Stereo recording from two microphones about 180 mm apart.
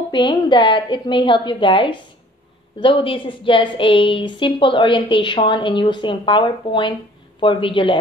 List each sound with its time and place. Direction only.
0.1 s a woman's voice: 25° left (ahead or behind)